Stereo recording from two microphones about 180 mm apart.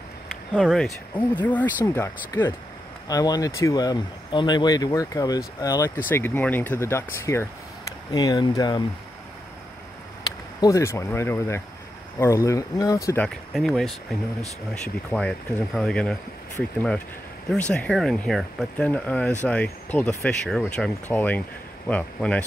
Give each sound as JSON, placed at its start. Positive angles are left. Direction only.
{"t": 0.6, "sound": "speech", "side_deg": 0}
{"t": 10.6, "sound": "speech", "side_deg": 15}
{"t": 13.5, "sound": "speech", "side_deg": 0}
{"t": 17.5, "sound": "speech", "side_deg": 5}